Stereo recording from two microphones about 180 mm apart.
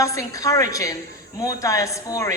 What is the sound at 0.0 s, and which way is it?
A woman's voice, 20° left (ahead or behind).